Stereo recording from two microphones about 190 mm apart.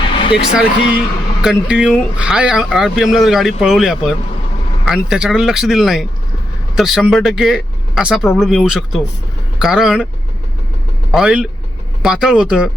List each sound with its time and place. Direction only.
0.0 s a sound: 25° left (ahead or behind)
0.3 s speech: 55° left (ahead or behind)
1.4 s speech: 5° right (ahead or behind)
11.1 s speech: 5° right (ahead or behind)